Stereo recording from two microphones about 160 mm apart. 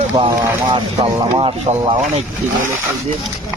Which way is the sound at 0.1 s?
25° right (ahead or behind).